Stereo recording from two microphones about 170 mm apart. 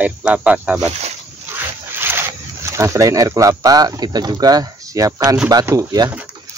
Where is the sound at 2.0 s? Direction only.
15° right (ahead or behind).